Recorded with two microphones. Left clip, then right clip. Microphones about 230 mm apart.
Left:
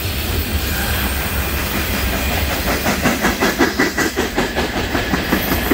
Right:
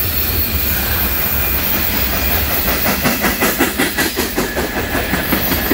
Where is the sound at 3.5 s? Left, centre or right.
Right.